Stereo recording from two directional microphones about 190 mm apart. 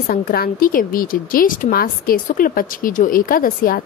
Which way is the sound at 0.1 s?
50° left (ahead or behind).